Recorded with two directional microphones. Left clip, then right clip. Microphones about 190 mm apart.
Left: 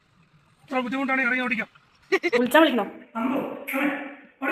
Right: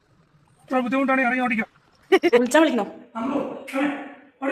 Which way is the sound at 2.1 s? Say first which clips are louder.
Right 5 dB; 45° right (ahead or behind).